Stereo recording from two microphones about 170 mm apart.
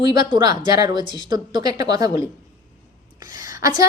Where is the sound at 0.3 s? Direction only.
25° right (ahead or behind).